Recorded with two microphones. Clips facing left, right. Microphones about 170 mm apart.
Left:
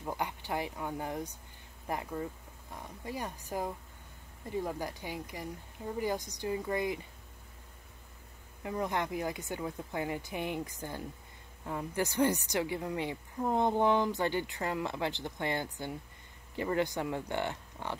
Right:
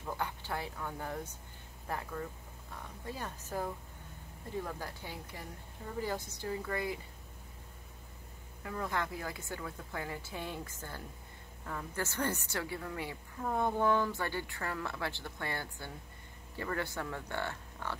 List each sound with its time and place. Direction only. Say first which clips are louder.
0.0 s speech: left 2 dB; 15° left (ahead or behind)
8.6 s a woman's voice: left 3 dB; 20° left (ahead or behind)